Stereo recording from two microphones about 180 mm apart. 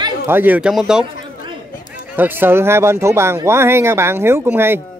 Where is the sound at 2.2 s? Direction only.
10° right (ahead or behind).